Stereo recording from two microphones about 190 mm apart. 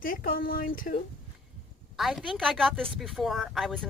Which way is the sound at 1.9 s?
Centre (ahead or behind).